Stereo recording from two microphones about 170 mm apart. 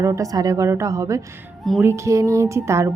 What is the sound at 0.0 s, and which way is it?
A woman's voice, 20° right (ahead or behind).